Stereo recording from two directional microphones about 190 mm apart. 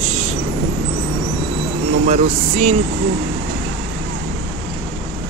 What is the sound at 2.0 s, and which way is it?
Speech, 35° right (ahead or behind).